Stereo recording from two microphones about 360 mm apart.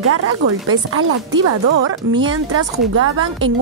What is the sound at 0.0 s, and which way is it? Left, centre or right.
A woman's voice, right.